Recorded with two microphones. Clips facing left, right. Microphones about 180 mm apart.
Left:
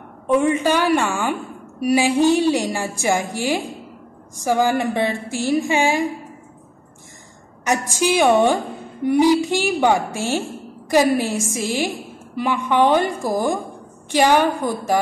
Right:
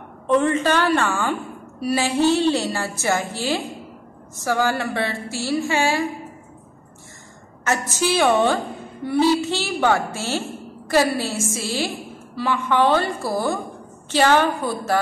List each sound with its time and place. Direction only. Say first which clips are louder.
0.3 s a woman's voice: left 1 dB; 10° left (ahead or behind)
7.6 s a woman's voice: left 2 dB; 15° left (ahead or behind)